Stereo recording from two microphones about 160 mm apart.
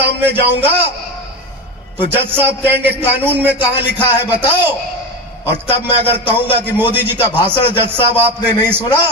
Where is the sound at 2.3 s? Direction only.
15° right (ahead or behind).